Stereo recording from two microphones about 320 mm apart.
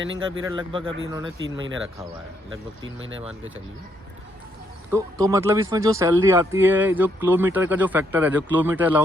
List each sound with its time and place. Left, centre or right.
0.0 s speech: right
0.4 s speech: centre
2.8 s speech: right
4.9 s speech: centre